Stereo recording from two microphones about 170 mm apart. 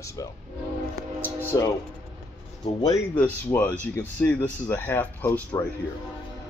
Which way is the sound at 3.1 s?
10° left (ahead or behind).